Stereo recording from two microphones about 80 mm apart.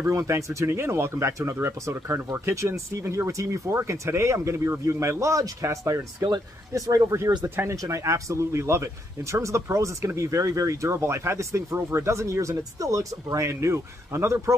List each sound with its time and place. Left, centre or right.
0.0 s speech: right
7.4 s speech: right
7.7 s speech: right